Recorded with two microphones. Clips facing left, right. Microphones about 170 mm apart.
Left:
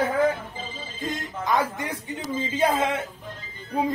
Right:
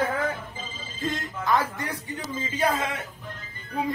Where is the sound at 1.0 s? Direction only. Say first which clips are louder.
Right 1 dB; 15° left (ahead or behind).